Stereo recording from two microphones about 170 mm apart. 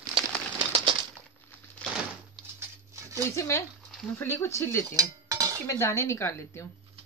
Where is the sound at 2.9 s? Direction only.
20° right (ahead or behind).